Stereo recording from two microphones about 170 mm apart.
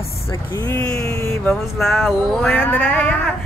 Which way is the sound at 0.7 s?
10° left (ahead or behind).